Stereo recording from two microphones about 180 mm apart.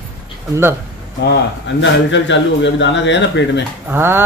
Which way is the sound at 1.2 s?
80° left.